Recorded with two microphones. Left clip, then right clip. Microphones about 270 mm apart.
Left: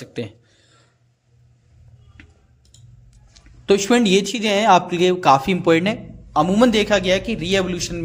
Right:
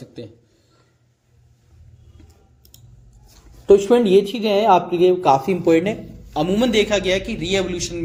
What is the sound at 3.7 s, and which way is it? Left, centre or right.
A man's voice, left.